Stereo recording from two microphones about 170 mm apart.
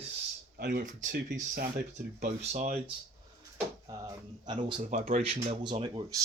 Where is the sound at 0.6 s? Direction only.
60° right (ahead or behind).